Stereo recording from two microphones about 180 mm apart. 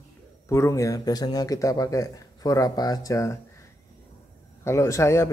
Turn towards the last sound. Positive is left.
turn(degrees=15)  # may be behind; listen again after turning